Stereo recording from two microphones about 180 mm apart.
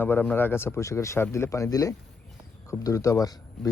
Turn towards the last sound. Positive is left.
turn(degrees=20)  # may be behind; listen again after turning